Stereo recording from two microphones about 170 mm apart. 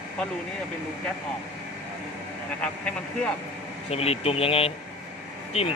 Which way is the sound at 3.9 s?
35° left (ahead or behind).